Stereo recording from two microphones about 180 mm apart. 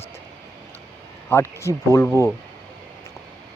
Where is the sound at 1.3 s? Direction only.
15° left (ahead or behind).